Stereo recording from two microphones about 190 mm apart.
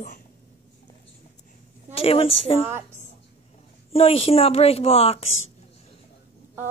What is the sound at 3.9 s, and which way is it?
A woman's voice, 30° left (ahead or behind).